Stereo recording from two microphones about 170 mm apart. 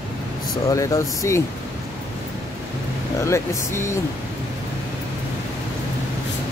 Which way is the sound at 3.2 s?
15° left (ahead or behind).